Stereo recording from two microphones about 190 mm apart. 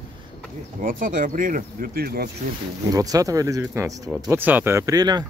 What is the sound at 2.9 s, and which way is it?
Speech, 20° right (ahead or behind).